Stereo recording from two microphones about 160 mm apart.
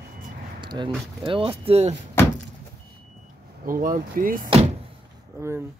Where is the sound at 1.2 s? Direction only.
35° right (ahead or behind).